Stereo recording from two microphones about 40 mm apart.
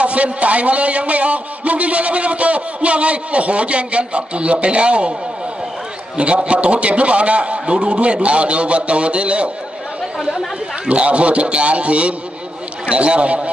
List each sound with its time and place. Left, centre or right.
0.0 s a man's voice: right
6.1 s a man's voice: right
10.9 s a man's voice: right